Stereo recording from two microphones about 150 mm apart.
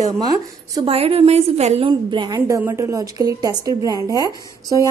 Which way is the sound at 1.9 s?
30° right (ahead or behind).